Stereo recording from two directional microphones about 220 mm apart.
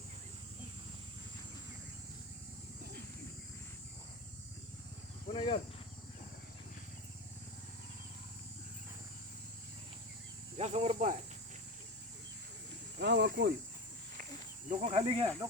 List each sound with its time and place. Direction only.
5.3 s a sound: 20° left (ahead or behind)
10.6 s speech: 30° right (ahead or behind)
13.0 s speech: 50° right (ahead or behind)
14.7 s speech: 30° right (ahead or behind)